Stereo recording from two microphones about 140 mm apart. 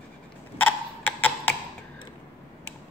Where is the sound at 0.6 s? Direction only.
10° left (ahead or behind).